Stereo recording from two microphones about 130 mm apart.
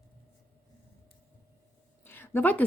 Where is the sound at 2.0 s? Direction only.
15° left (ahead or behind).